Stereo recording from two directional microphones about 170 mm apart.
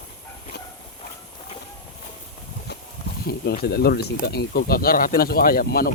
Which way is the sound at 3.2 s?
65° left (ahead or behind).